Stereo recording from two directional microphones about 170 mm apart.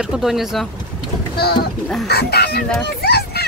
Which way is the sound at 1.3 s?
65° left (ahead or behind).